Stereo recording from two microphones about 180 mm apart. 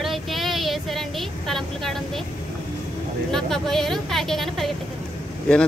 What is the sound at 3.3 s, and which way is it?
Speech, centre (ahead or behind).